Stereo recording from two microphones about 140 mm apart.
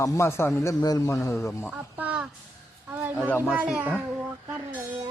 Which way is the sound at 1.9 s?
10° right (ahead or behind).